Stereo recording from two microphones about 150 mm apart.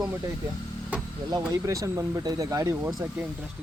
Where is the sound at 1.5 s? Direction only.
20° right (ahead or behind).